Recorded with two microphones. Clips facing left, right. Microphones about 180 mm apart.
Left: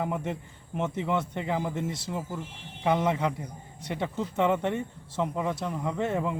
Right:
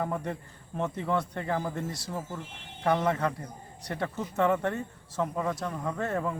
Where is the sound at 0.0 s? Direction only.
10° left (ahead or behind).